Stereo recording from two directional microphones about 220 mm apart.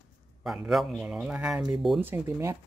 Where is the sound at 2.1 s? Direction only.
10° right (ahead or behind).